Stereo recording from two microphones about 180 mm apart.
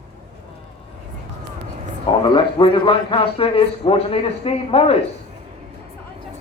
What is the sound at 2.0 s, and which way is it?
A man's voice, 25° left (ahead or behind).